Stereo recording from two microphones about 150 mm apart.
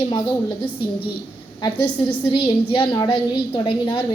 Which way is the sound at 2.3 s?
35° left (ahead or behind).